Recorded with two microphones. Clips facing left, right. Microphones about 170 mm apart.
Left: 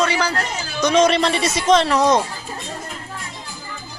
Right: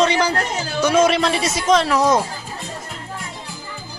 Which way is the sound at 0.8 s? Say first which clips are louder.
Even; 5° right (ahead or behind).